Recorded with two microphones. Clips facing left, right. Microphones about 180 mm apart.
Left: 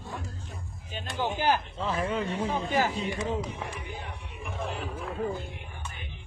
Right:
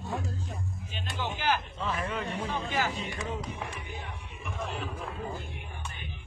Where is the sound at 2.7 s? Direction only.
40° left (ahead or behind).